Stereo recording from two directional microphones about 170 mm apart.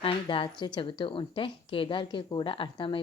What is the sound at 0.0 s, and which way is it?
Speech, 30° left (ahead or behind).